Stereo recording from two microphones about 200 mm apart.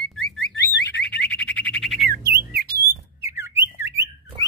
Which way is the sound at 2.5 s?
50° right (ahead or behind).